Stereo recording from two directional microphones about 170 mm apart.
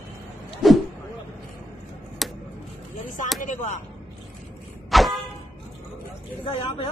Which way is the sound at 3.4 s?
45° left (ahead or behind).